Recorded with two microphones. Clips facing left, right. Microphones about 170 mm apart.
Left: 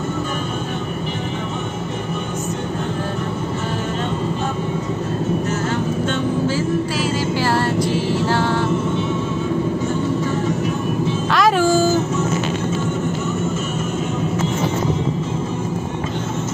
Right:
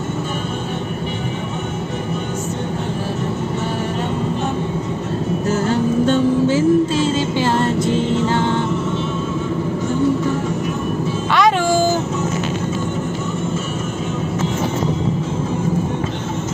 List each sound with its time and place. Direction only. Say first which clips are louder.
6.4 s music: right 6 dB; 25° right (ahead or behind)
11.3 s music: right 1 dB; 5° left (ahead or behind)